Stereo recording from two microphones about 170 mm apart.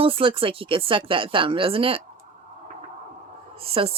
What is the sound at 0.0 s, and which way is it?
Speech, 30° right (ahead or behind).